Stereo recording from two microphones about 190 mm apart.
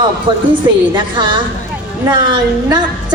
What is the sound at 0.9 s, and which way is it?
Speech, 25° right (ahead or behind).